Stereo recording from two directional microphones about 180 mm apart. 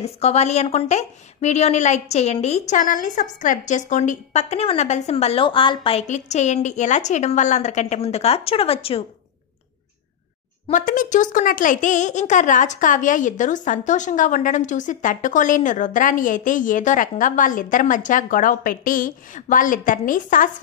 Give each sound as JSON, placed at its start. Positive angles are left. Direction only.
{"t": 0.0, "sound": "a woman's voice", "side_deg": 35}
{"t": 10.7, "sound": "a woman's voice", "side_deg": 45}